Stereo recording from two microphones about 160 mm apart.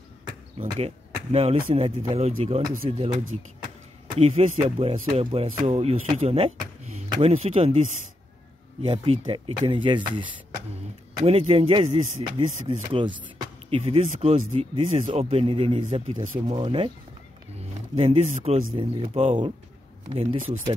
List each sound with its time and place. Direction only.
0.6 s speech: 40° right (ahead or behind)
17.9 s speech: 40° right (ahead or behind)